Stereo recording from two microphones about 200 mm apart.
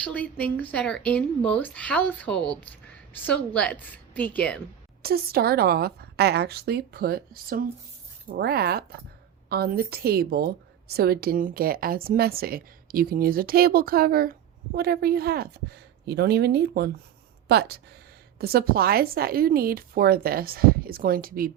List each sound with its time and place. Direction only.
0.0 s speech: 5° left (ahead or behind)
5.0 s a woman's voice: 50° right (ahead or behind)